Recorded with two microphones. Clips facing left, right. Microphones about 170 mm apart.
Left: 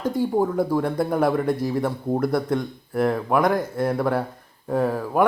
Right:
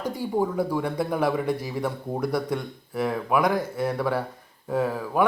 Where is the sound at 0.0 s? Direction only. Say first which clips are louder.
Left 4 dB; 10° right (ahead or behind).